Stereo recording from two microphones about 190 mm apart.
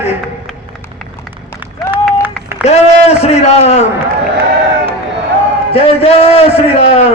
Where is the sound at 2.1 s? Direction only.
10° right (ahead or behind).